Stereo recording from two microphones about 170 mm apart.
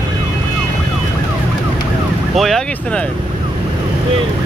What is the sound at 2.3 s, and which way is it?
Speech, centre (ahead or behind).